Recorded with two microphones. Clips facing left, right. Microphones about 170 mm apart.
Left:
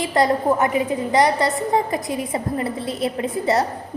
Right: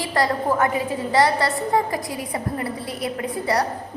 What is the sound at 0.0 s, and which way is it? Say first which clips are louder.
A woman's voice: left 4 dB; 20° left (ahead or behind).